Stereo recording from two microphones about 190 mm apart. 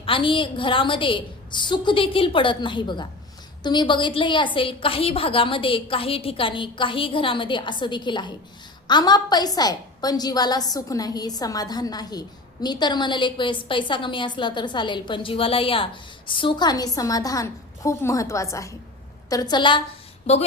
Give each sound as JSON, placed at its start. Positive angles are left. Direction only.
{"t": 0.0, "sound": "a woman's voice", "side_deg": 25}